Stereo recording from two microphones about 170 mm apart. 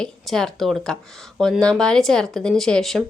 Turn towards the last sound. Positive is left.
turn(degrees=0)  # may be behind; listen again after turning